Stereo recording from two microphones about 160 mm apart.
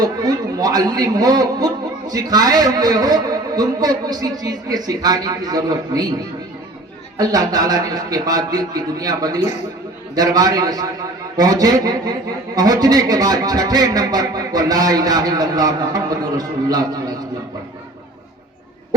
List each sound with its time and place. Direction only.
0.0 s a man's voice: 25° right (ahead or behind)
7.2 s a man's voice: 25° right (ahead or behind)